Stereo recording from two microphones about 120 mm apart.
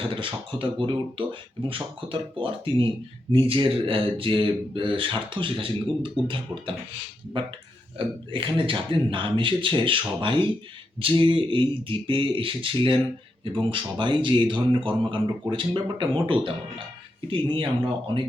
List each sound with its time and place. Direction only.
0.0 s a man's voice: 45° right (ahead or behind)